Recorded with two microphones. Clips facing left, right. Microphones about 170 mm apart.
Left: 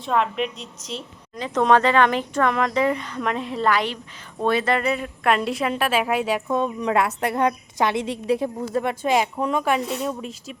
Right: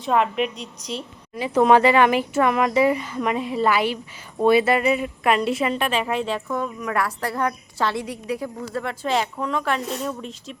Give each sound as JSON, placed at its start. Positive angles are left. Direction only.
{"t": 0.0, "sound": "a woman's voice", "side_deg": -5}
{"t": 6.5, "sound": "a woman's voice", "side_deg": 25}